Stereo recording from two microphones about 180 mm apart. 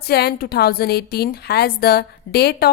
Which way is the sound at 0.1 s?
60° left (ahead or behind).